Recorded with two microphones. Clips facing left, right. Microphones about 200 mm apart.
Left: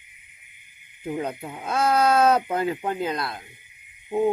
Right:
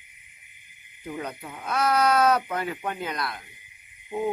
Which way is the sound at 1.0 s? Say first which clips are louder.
Left 5 dB; 30° left (ahead or behind).